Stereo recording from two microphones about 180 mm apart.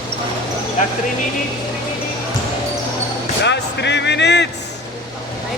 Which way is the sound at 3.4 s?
75° left (ahead or behind).